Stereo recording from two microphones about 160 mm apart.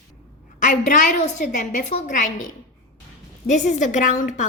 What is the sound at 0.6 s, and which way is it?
A woman's voice, 50° left (ahead or behind).